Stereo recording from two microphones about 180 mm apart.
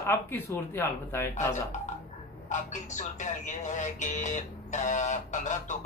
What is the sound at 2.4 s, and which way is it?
A man's voice, 40° left (ahead or behind).